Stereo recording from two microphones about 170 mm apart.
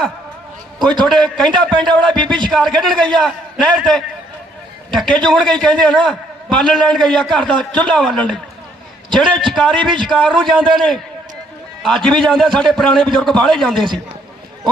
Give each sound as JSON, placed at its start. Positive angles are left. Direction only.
{"t": 0.8, "sound": "a man's voice", "side_deg": 5}